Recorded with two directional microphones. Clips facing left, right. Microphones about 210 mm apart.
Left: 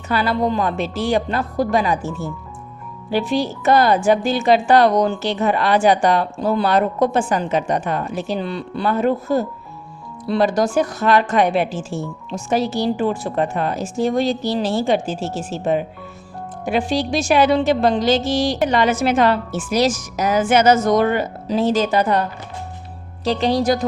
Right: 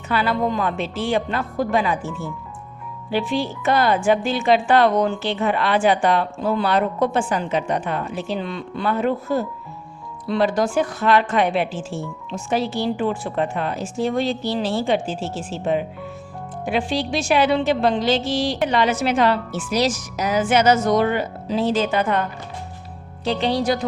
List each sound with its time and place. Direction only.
0.1 s a woman's voice: 40° left (ahead or behind)